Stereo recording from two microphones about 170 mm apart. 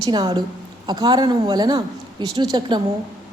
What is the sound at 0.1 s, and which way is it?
A woman's voice, 25° right (ahead or behind).